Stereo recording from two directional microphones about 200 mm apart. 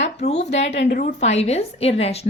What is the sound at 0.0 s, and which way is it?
Speech, 35° left (ahead or behind).